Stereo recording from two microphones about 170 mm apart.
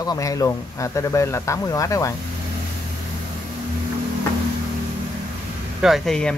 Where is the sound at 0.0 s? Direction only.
20° left (ahead or behind).